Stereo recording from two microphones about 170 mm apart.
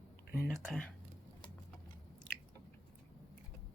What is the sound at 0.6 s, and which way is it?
Speech, 5° left (ahead or behind).